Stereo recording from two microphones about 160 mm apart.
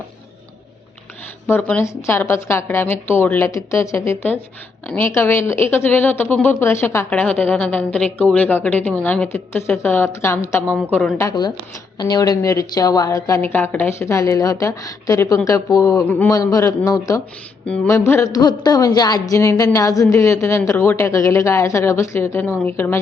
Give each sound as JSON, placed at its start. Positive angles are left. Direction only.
{"t": 1.5, "sound": "a woman's voice", "side_deg": 10}